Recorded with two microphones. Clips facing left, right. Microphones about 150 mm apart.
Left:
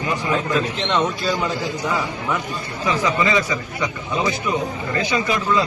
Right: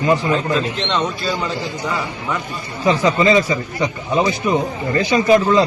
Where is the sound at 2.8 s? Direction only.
30° right (ahead or behind).